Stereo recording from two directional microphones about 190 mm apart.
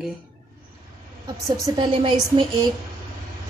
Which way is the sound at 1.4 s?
20° right (ahead or behind).